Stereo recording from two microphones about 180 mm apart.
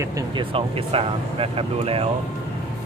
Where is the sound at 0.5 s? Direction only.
30° right (ahead or behind).